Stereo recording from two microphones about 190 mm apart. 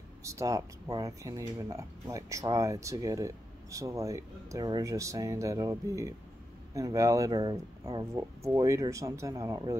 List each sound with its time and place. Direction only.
0.2 s speech: 15° right (ahead or behind)